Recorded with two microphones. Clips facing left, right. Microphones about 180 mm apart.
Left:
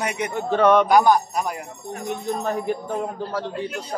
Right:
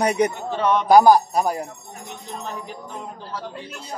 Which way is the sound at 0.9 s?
35° right (ahead or behind).